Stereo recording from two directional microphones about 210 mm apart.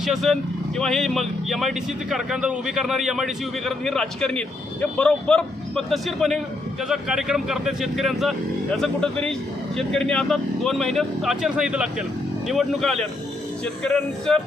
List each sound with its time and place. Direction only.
0.0 s speech: centre (ahead or behind)